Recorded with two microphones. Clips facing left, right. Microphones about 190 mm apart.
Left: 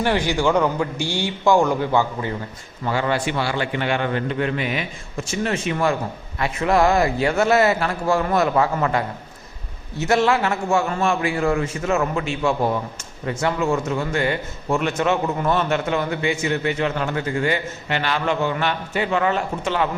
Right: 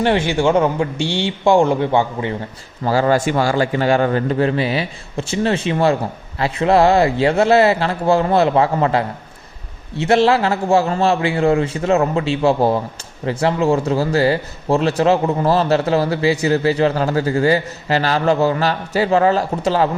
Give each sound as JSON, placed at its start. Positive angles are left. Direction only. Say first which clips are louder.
{"t": 0.0, "sound": "a man's voice", "louder": "right 4 dB", "side_deg": -20}
{"t": 2.8, "sound": "speech", "louder": "right 6 dB", "side_deg": -40}
{"t": 10.1, "sound": "speech", "louder": "right 4 dB", "side_deg": -30}